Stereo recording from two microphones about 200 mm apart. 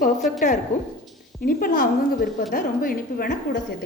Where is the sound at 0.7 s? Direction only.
35° left (ahead or behind).